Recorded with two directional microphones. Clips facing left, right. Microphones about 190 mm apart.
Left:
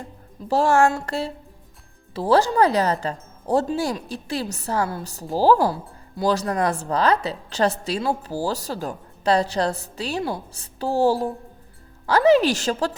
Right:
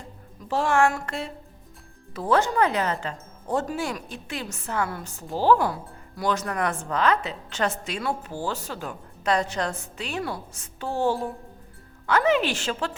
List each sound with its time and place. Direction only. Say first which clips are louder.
0.4 s speech: left 4 dB; 40° left (ahead or behind)